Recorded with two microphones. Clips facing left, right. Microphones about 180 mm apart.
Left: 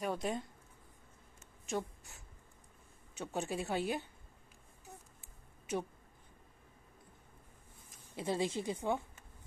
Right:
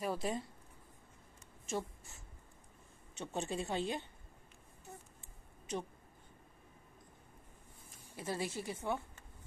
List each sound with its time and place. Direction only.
0.0 s speech: centre (ahead or behind)
1.7 s a woman's voice: centre (ahead or behind)
8.2 s speech: 20° left (ahead or behind)